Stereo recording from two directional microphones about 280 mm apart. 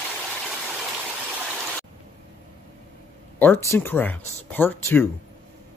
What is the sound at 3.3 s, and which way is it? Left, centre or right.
Speech, centre.